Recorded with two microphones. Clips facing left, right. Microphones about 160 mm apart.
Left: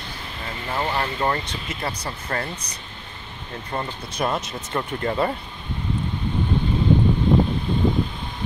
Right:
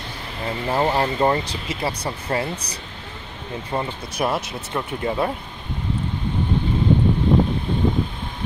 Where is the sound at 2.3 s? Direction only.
20° right (ahead or behind).